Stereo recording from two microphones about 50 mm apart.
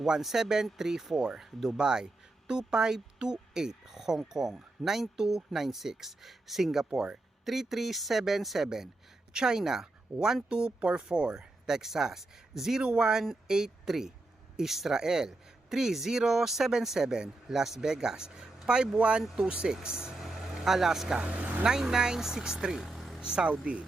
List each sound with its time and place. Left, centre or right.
0.0 s speech: centre
10.7 s speech: right; by 12.8 s centre
12.8 s speech: centre
21.2 s speech: right
21.6 s speech: centre
23.2 s speech: centre